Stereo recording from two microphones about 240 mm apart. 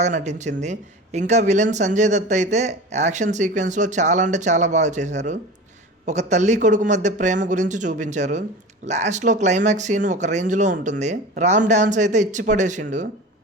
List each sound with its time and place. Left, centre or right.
0.0 s speech: right